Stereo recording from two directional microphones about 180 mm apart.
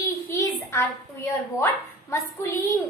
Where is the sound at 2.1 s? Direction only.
15° left (ahead or behind).